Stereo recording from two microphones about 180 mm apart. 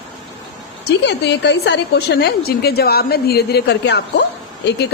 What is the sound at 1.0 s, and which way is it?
A woman's voice, 70° left (ahead or behind).